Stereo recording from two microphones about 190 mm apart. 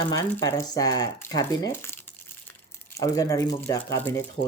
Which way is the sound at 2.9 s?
15° left (ahead or behind).